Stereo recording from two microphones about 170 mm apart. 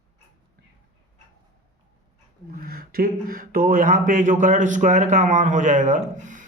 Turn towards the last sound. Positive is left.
turn(degrees=-45)  # may be behind; listen again after turning